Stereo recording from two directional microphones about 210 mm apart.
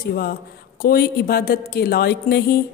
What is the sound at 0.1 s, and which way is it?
Speech, 45° left (ahead or behind).